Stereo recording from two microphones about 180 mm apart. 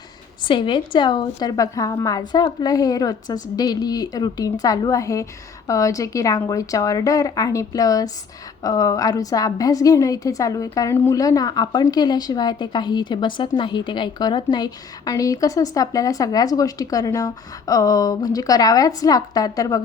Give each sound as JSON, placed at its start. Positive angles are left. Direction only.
{"t": 0.4, "sound": "a woman's voice", "side_deg": 25}